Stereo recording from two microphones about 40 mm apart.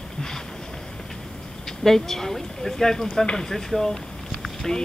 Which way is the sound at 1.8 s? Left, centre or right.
Centre.